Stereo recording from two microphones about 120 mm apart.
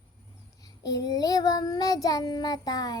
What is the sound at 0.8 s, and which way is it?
Child singing, 30° left (ahead or behind).